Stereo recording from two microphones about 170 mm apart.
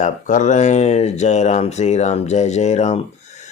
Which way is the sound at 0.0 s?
50° left (ahead or behind).